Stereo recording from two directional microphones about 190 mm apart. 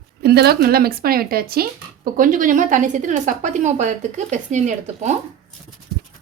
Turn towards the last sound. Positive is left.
turn(degrees=-40)  # may be behind; listen again after turning